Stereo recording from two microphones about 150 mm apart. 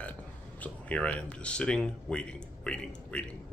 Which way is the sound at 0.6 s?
10° left (ahead or behind).